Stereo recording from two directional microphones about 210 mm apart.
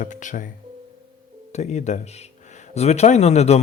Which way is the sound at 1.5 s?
35° left (ahead or behind).